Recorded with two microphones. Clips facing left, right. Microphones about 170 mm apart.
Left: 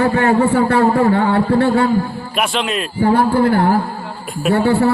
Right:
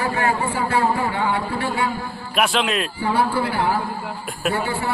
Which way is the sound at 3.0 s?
50° left (ahead or behind).